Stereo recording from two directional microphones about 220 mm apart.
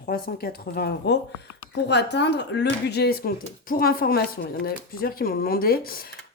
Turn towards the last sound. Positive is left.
turn(degrees=40)  # may be behind; listen again after turning